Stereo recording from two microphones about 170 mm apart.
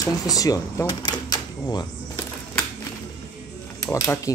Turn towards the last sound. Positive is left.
turn(degrees=20)  # may be behind; listen again after turning